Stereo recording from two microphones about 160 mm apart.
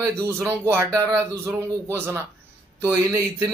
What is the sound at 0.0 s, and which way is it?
A man's voice, 15° right (ahead or behind).